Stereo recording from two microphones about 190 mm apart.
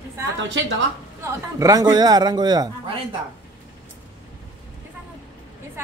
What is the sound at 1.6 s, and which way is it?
A man's voice, 20° right (ahead or behind).